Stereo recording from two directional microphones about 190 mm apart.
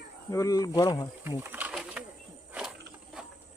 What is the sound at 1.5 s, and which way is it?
Pigeon, 10° right (ahead or behind).